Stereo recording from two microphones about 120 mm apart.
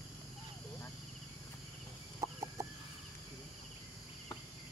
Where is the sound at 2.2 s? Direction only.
25° right (ahead or behind).